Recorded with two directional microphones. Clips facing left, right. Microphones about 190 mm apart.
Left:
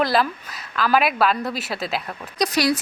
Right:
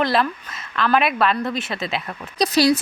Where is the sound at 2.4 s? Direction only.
30° right (ahead or behind).